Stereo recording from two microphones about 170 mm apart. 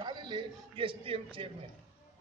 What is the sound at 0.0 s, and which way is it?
A man's voice, 25° right (ahead or behind).